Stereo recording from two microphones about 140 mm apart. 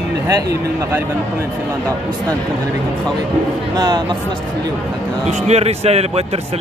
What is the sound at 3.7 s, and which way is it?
Speech, 30° right (ahead or behind).